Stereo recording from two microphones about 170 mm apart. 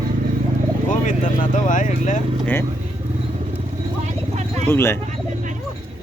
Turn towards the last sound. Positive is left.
turn(degrees=15)  # may be behind; listen again after turning